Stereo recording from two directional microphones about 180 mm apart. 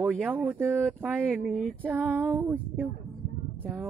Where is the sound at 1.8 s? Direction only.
10° right (ahead or behind).